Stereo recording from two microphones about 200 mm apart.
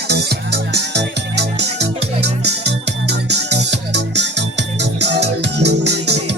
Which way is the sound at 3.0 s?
55° right (ahead or behind).